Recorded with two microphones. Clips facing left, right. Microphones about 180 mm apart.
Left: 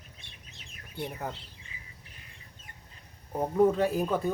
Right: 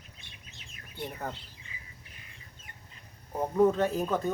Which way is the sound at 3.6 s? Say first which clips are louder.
Even; 10° left (ahead or behind).